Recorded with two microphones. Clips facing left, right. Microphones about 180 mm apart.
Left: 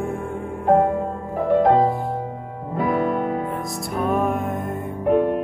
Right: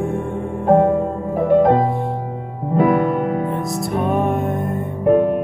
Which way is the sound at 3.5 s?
Centre (ahead or behind).